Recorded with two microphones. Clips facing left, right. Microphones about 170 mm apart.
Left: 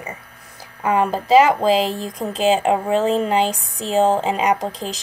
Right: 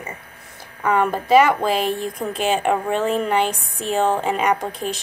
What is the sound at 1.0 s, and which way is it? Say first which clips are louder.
Speech: left 1 dB; 30° left (ahead or behind).